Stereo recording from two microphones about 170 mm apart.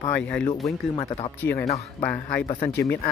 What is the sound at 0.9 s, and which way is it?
Speech, 30° left (ahead or behind).